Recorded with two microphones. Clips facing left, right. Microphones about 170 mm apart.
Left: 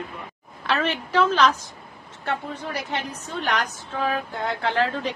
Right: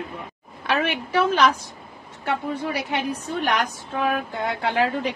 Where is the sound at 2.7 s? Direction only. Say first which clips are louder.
Right 4 dB; 10° right (ahead or behind).